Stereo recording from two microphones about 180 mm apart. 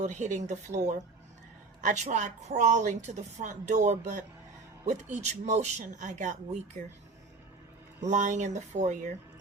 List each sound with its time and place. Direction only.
0.0 s a woman's voice: 40° right (ahead or behind)
8.1 s speech: 45° right (ahead or behind)